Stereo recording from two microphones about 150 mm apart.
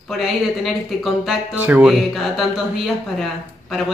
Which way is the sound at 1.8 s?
Centre (ahead or behind).